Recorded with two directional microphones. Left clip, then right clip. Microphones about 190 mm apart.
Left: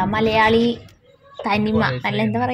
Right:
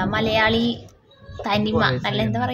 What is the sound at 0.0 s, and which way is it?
A woman's voice, 15° left (ahead or behind).